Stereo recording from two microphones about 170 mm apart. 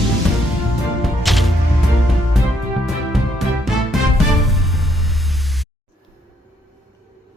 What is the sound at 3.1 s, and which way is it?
Music, centre (ahead or behind).